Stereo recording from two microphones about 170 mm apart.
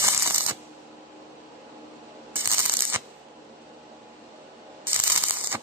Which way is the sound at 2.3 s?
10° right (ahead or behind).